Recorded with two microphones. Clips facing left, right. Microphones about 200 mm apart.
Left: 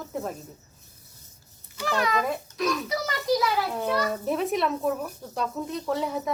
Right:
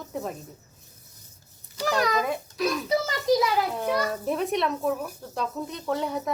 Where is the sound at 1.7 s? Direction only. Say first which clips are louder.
Right 2 dB; 40° right (ahead or behind).